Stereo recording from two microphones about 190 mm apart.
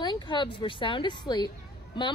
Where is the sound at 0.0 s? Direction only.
25° left (ahead or behind).